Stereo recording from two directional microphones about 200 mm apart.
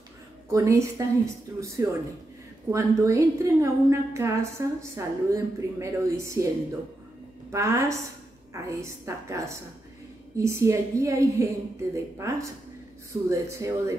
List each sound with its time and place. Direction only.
0.5 s a woman's voice: 15° right (ahead or behind)
7.5 s a woman's voice: 15° right (ahead or behind)